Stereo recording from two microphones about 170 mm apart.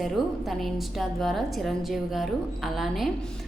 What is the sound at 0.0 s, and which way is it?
A woman's voice, centre (ahead or behind).